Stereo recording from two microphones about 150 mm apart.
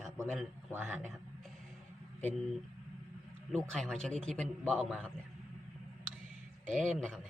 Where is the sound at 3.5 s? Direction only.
5° left (ahead or behind).